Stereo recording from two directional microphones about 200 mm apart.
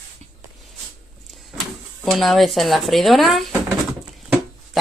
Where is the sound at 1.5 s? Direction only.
Centre (ahead or behind).